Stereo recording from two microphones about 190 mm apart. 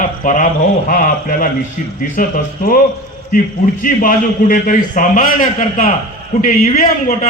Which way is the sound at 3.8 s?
45° left (ahead or behind).